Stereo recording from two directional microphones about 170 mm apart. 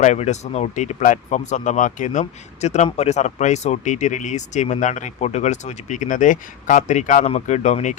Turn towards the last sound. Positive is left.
turn(degrees=45)  # may be behind; listen again after turning